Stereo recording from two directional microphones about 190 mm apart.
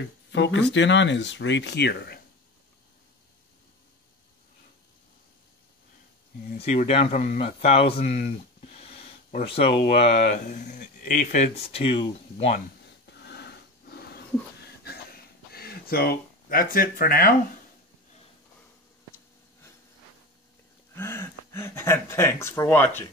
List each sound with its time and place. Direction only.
0.3 s speech: 70° left (ahead or behind)
6.6 s speech: 35° left (ahead or behind)
13.1 s a sound: 60° left (ahead or behind)
15.5 s speech: 55° left (ahead or behind)
20.9 s speech: 10° left (ahead or behind)